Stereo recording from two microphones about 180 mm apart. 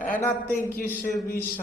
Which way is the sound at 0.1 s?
10° left (ahead or behind).